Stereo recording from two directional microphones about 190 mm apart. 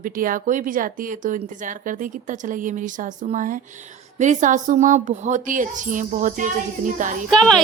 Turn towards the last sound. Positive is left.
turn(degrees=0)  # may be behind; listen again after turning